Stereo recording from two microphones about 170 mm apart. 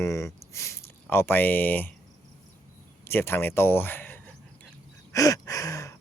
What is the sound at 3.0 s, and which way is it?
Speech, 15° left (ahead or behind).